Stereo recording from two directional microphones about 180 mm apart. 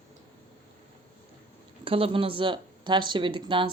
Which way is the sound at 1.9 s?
30° right (ahead or behind).